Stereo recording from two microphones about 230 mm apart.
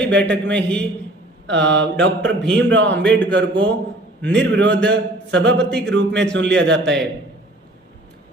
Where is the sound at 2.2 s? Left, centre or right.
Centre.